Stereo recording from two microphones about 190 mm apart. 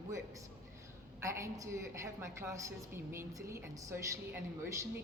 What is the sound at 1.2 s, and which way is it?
A woman's voice, 15° right (ahead or behind).